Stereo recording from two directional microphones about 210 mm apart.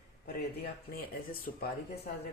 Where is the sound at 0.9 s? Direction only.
45° left (ahead or behind).